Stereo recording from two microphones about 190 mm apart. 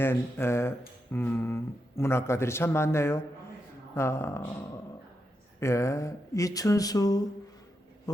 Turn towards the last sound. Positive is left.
turn(degrees=20)  # may be behind; listen again after turning